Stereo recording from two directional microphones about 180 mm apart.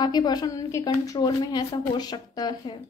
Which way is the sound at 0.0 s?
20° left (ahead or behind).